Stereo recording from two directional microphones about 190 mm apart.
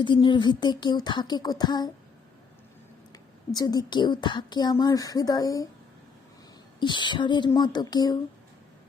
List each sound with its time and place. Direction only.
0.0 s speech: 25° left (ahead or behind)
3.5 s speech: 20° left (ahead or behind)
6.7 s speech: 25° left (ahead or behind)